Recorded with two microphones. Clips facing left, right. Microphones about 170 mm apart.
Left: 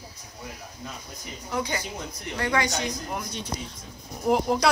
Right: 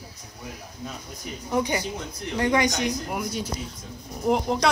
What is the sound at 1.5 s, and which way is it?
A woman's voice, 15° right (ahead or behind).